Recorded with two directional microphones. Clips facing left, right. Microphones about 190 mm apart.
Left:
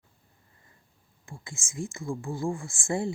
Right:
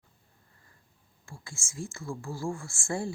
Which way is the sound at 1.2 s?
20° left (ahead or behind).